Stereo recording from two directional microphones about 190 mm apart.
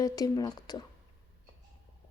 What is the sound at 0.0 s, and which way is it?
Speech, 20° left (ahead or behind).